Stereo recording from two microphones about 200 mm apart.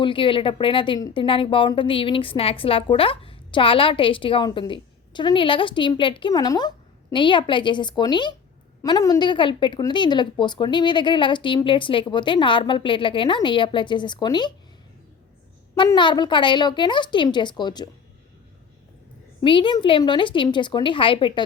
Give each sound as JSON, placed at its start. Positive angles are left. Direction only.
{"t": 0.0, "sound": "speech", "side_deg": 25}
{"t": 15.8, "sound": "speech", "side_deg": 25}
{"t": 19.4, "sound": "speech", "side_deg": 25}